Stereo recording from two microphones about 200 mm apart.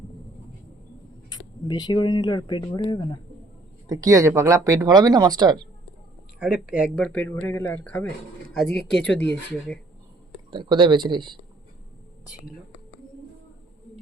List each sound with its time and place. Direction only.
1.3 s speech: 20° left (ahead or behind)
3.8 s speech: 15° right (ahead or behind)
6.4 s speech: 5° right (ahead or behind)
10.5 s speech: 25° right (ahead or behind)